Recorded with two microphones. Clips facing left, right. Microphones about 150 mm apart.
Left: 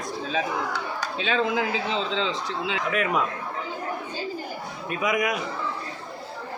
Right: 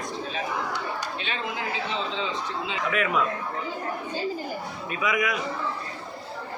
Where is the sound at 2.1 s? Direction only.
90° left.